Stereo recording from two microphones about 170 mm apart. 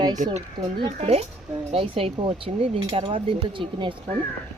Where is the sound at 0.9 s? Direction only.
40° right (ahead or behind).